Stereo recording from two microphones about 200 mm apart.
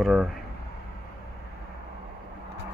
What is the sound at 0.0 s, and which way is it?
Speech, 5° right (ahead or behind).